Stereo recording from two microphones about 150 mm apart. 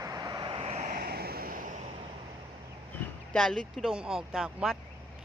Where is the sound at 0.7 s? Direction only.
50° right (ahead or behind).